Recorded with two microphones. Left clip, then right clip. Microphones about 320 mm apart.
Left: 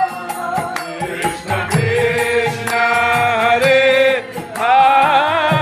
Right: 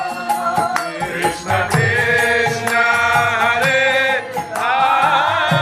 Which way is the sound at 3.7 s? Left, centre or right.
Centre.